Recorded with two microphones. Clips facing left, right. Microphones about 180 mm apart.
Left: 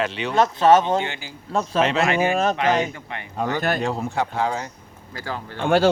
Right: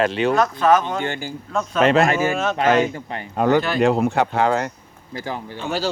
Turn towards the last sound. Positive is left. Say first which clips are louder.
# left 7 dB
turn(degrees=55)  # may be behind; listen again after turning